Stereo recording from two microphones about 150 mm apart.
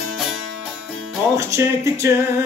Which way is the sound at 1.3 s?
20° right (ahead or behind).